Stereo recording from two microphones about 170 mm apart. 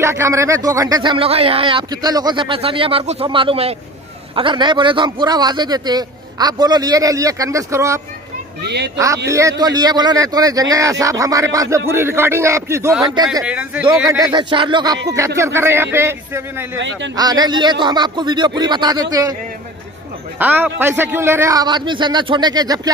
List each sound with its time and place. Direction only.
0.0 s speech: 15° right (ahead or behind)
8.6 s speech: 75° right (ahead or behind)
8.9 s a man's voice: 20° right (ahead or behind)
13.5 s a man's voice: 5° right (ahead or behind)
14.0 s a man's voice: 25° right (ahead or behind)
16.7 s a man's voice: 90° right
17.1 s speech: 25° right (ahead or behind)
20.3 s speech: 10° right (ahead or behind)